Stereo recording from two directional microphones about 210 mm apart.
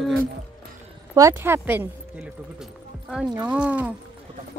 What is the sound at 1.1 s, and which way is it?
Speech, 15° right (ahead or behind).